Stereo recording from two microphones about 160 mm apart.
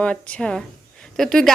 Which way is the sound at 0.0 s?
5° left (ahead or behind).